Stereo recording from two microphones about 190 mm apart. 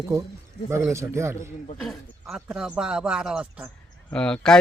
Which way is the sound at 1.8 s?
Centre (ahead or behind).